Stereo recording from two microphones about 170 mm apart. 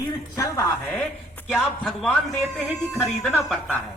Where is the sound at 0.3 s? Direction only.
20° left (ahead or behind).